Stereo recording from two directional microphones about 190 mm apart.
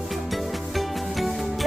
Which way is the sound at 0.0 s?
Centre (ahead or behind).